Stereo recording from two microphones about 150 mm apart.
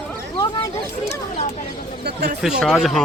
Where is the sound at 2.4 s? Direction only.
Centre (ahead or behind).